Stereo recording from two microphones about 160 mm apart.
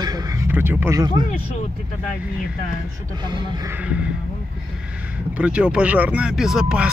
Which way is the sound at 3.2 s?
30° right (ahead or behind).